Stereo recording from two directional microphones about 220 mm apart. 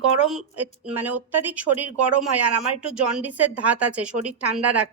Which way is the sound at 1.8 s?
90° right.